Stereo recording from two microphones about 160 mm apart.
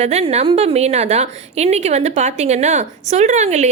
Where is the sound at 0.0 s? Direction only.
40° right (ahead or behind).